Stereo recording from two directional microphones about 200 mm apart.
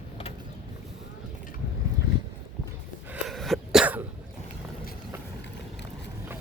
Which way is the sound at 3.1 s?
Centre (ahead or behind).